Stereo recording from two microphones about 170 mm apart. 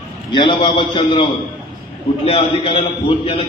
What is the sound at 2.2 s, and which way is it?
A man's voice, 35° left (ahead or behind).